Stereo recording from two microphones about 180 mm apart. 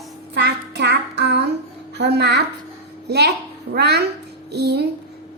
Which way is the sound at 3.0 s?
65° right (ahead or behind).